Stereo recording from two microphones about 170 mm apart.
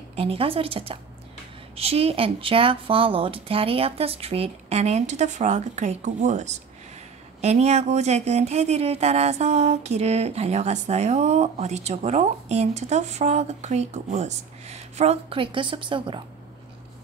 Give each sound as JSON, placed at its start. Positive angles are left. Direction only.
{"t": 0.1, "sound": "speech", "side_deg": -35}